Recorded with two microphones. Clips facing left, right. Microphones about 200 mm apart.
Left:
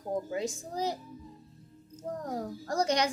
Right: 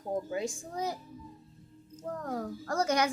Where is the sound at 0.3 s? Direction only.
35° left (ahead or behind).